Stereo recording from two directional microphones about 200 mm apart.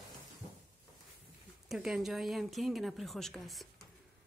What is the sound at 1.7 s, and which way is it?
Speech, centre (ahead or behind).